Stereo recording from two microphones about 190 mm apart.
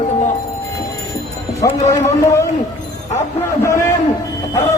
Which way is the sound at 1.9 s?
15° left (ahead or behind).